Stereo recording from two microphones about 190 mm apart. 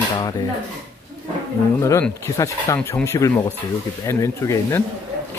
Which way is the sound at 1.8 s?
15° left (ahead or behind).